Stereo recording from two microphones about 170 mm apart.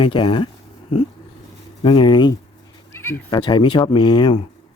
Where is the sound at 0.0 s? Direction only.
30° left (ahead or behind).